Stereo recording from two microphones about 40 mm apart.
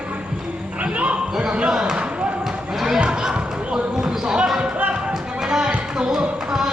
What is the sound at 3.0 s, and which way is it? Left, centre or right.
Basketball bounce, right.